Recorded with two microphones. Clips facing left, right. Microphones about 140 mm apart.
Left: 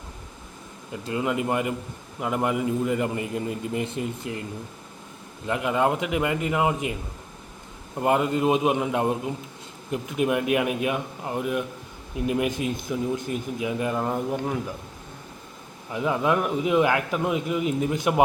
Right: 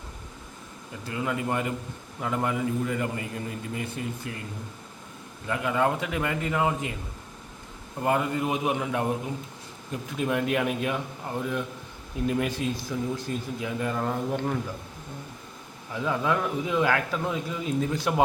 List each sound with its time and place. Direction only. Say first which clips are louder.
1.0 s a man's voice: left 4 dB; 20° left (ahead or behind)
5.5 s speech: left 2 dB; 20° left (ahead or behind)
8.0 s a man's voice: left 4 dB; 20° left (ahead or behind)
15.9 s speech: left 3 dB; 15° left (ahead or behind)